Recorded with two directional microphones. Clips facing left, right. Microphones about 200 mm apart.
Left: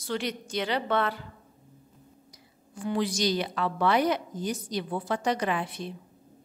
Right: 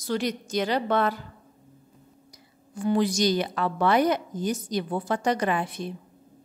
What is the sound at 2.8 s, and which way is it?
A woman's voice, 45° right (ahead or behind).